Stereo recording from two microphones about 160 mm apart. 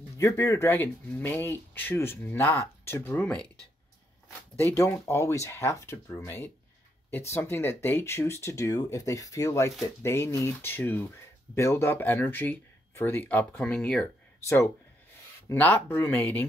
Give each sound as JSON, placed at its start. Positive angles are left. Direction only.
{"t": 0.2, "sound": "speech", "side_deg": 20}
{"t": 4.6, "sound": "speech", "side_deg": 20}
{"t": 14.4, "sound": "speech", "side_deg": 20}